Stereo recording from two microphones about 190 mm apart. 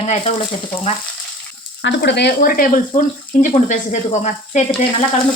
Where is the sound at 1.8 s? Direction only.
65° left (ahead or behind); by 4.6 s 40° left (ahead or behind).